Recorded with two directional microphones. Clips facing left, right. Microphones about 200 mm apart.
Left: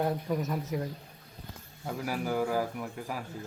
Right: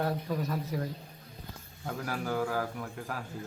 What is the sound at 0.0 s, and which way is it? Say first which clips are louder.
Speech: left 2 dB; 15° left (ahead or behind).